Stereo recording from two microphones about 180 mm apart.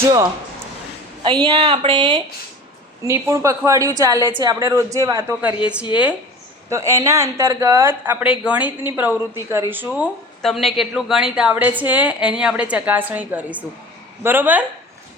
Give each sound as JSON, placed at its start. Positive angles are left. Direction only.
{"t": 0.0, "sound": "speech", "side_deg": -20}
{"t": 1.5, "sound": "speech", "side_deg": -35}
{"t": 6.7, "sound": "speech", "side_deg": -15}
{"t": 10.4, "sound": "speech", "side_deg": 0}